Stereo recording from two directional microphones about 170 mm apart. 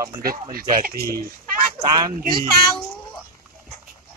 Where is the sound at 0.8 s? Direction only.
60° right (ahead or behind).